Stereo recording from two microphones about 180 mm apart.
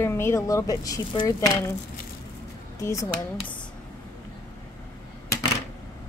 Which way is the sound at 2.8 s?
15° left (ahead or behind).